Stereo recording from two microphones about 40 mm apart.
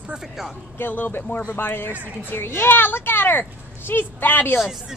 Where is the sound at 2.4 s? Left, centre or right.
Left.